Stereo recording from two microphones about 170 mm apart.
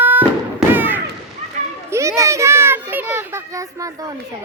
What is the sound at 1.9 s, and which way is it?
Children playing, 15° right (ahead or behind).